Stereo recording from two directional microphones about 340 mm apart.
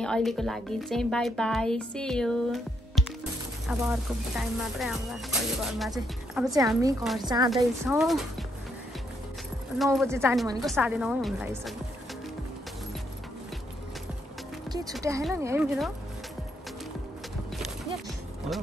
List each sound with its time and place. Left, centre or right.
0.0 s a woman's voice: centre
9.8 s speech: centre
14.9 s speech: centre